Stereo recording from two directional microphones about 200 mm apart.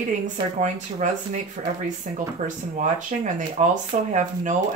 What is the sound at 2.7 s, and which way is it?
Speech, 40° right (ahead or behind).